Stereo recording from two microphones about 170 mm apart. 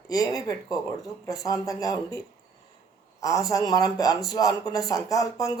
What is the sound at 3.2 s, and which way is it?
Speech, 20° left (ahead or behind).